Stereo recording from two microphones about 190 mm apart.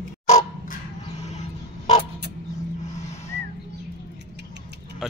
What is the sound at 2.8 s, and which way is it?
Vehicle, 35° left (ahead or behind).